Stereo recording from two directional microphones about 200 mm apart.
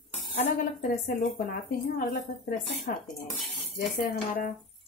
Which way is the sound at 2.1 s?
45° left (ahead or behind).